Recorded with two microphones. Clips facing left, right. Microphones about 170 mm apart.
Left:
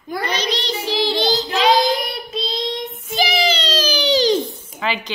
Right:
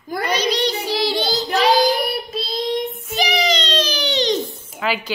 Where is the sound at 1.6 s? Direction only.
10° right (ahead or behind).